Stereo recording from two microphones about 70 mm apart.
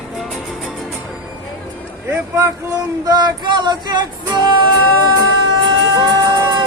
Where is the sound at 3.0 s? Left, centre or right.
Right.